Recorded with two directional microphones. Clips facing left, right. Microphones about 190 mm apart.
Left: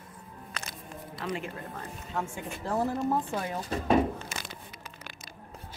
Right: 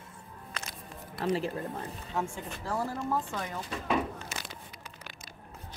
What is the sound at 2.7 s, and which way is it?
Speech, 25° left (ahead or behind).